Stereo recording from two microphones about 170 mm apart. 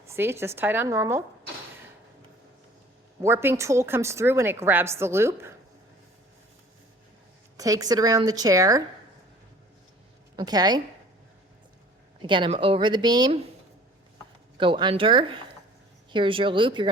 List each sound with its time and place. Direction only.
0.0 s a woman's voice: 15° right (ahead or behind)
3.2 s a woman's voice: 15° right (ahead or behind)
7.5 s a woman's voice: 20° right (ahead or behind)
10.3 s a woman's voice: 25° right (ahead or behind)
12.2 s a woman's voice: 30° right (ahead or behind)
14.6 s a woman's voice: 30° right (ahead or behind)